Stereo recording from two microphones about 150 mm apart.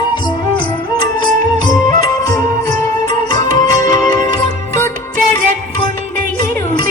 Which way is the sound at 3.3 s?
25° left (ahead or behind).